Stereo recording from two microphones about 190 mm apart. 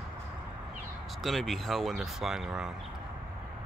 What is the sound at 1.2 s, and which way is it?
Speech, centre (ahead or behind).